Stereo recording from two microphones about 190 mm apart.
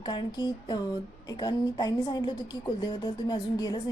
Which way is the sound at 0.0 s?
25° left (ahead or behind).